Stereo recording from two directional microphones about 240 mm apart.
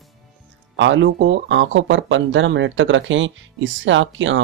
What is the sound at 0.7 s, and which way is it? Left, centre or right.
Speech, right.